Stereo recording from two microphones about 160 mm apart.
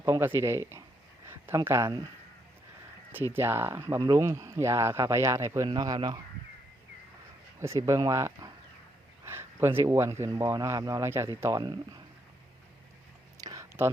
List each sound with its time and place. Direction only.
0.0 s speech: 15° right (ahead or behind)
3.3 s speech: 15° right (ahead or behind)
7.6 s speech: 20° right (ahead or behind)
13.4 s a sound: 20° right (ahead or behind)